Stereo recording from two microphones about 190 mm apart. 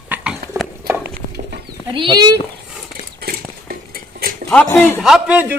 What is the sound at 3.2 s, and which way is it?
Cutlery, 50° right (ahead or behind).